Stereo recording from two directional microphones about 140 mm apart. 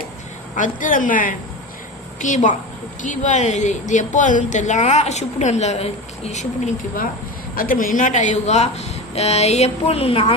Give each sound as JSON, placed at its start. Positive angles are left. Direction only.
{"t": 0.5, "sound": "speech", "side_deg": 70}
{"t": 7.5, "sound": "speech", "side_deg": 85}